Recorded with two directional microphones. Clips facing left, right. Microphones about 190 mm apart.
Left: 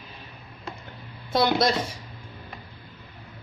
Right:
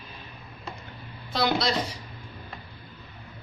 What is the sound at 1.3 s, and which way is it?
Speech, 50° left (ahead or behind).